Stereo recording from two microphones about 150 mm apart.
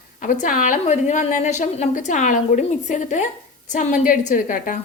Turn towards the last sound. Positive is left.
turn(degrees=60)  # may be behind; listen again after turning